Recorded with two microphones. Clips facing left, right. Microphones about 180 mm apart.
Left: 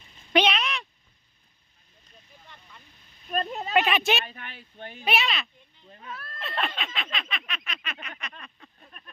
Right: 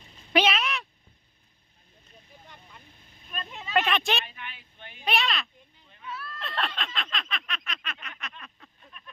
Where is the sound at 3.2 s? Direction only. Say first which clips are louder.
Left 11 dB; 45° left (ahead or behind).